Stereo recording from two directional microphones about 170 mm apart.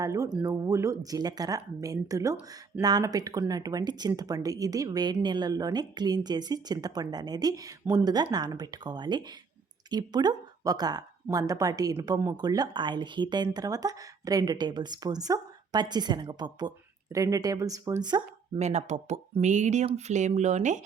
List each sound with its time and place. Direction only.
0.0 s a woman's voice: 20° right (ahead or behind)
18.6 s speech: 40° right (ahead or behind)